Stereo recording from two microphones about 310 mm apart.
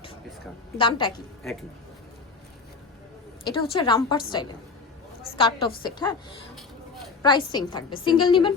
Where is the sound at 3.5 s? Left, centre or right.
Centre.